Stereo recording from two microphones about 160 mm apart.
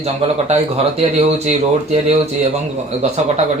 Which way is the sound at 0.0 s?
40° right (ahead or behind).